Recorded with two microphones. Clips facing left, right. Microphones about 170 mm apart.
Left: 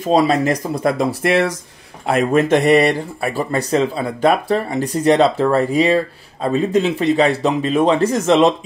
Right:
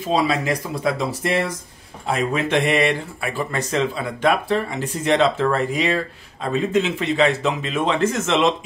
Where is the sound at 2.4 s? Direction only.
40° left (ahead or behind).